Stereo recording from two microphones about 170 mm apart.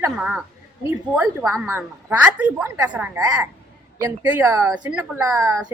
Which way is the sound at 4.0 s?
20° right (ahead or behind).